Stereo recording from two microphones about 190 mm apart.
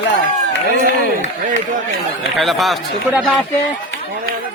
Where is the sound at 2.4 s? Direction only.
Centre (ahead or behind).